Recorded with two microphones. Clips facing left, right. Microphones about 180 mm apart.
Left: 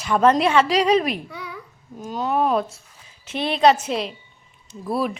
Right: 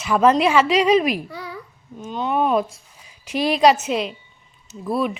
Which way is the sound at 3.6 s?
10° right (ahead or behind).